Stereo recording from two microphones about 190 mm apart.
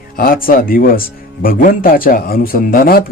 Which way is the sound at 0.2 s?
50° left (ahead or behind).